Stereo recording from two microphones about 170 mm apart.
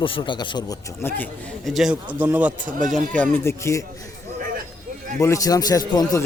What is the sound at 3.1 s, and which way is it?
Speech, 10° left (ahead or behind).